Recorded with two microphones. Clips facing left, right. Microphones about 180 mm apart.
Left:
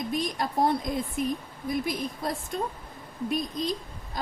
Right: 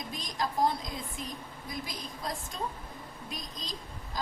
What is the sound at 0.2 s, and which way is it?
Speech, 60° left (ahead or behind).